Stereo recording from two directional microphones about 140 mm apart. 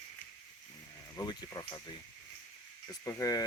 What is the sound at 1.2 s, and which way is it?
Speech, 25° left (ahead or behind).